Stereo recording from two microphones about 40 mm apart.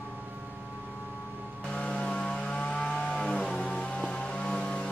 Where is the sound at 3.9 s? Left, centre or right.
Left.